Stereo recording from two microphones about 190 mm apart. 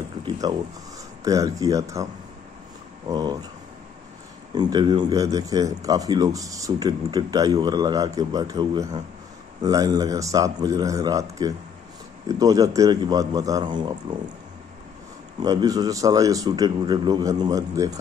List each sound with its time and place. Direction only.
0.2 s a sound: 20° right (ahead or behind)
1.2 s speech: 15° right (ahead or behind)
3.1 s speech: 20° right (ahead or behind)
4.6 s speech: 20° right (ahead or behind)
15.4 s speech: 20° right (ahead or behind)